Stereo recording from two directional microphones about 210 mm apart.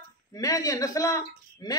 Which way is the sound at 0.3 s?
15° left (ahead or behind).